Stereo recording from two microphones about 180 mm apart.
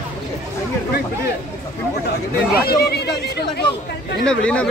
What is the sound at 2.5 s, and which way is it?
Speech, 60° left (ahead or behind).